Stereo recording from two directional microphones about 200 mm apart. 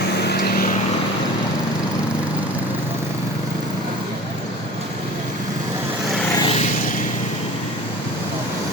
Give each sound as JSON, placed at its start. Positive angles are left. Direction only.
{"t": 0.2, "sound": "vehicle", "side_deg": 55}
{"t": 6.4, "sound": "vehicle", "side_deg": 30}